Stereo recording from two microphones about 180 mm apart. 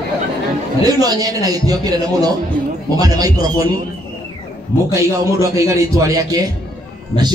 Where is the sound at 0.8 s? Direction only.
20° right (ahead or behind).